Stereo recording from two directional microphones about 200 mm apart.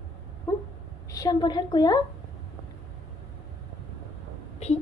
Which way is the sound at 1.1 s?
20° left (ahead or behind).